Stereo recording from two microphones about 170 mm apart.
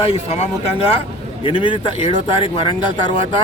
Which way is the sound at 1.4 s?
30° left (ahead or behind).